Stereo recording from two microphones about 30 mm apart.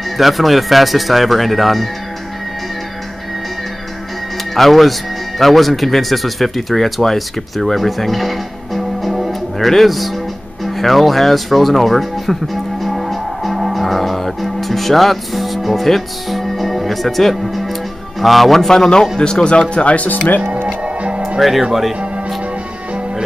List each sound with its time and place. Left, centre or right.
0.2 s speech: centre
4.6 s speech: centre
7.6 s music: centre
10.6 s speech: centre
12.8 s music: centre
18.2 s speech: centre
18.7 s speech: left
19.7 s speech: left
20.6 s music: right
21.4 s speech: centre